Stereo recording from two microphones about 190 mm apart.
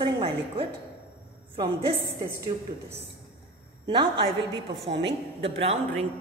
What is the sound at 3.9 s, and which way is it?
Speech, 25° right (ahead or behind).